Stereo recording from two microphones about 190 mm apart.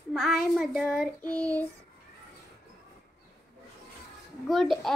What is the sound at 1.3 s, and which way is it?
Child singing, 15° right (ahead or behind).